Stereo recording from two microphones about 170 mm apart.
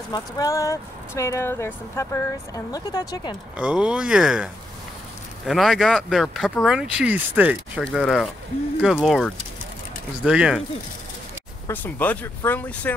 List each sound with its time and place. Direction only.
0.1 s speech: 20° left (ahead or behind)
3.5 s speech: 5° right (ahead or behind)
11.6 s speech: 10° left (ahead or behind)